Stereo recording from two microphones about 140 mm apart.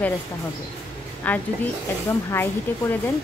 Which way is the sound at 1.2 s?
10° left (ahead or behind).